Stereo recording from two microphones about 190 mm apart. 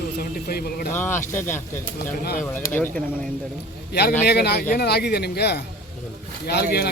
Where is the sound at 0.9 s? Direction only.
10° left (ahead or behind).